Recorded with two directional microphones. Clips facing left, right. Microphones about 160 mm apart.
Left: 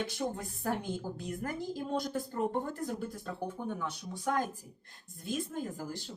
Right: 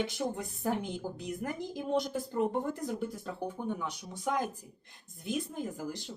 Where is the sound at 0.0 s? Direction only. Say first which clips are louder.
Right 2 dB; 20° right (ahead or behind).